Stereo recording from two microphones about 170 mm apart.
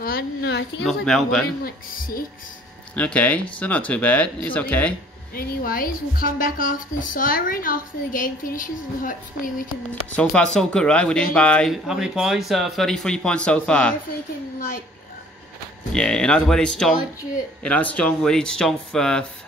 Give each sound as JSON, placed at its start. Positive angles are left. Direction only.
{"t": 0.0, "sound": "a sound", "side_deg": 70}
{"t": 0.8, "sound": "speech", "side_deg": 0}
{"t": 1.6, "sound": "a woman's voice", "side_deg": 60}
{"t": 3.0, "sound": "speech", "side_deg": 10}
{"t": 5.3, "sound": "a woman's voice", "side_deg": 60}
{"t": 10.3, "sound": "speech", "side_deg": 5}
{"t": 15.9, "sound": "speech", "side_deg": 5}